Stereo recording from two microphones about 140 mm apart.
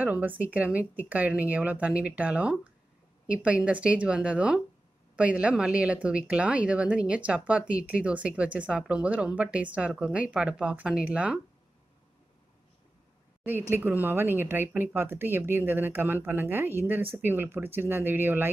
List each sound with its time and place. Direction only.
0.0 s speech: 10° right (ahead or behind)
13.4 s a woman's voice: 15° right (ahead or behind)